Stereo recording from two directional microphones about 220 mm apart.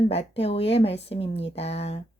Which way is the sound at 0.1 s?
25° left (ahead or behind).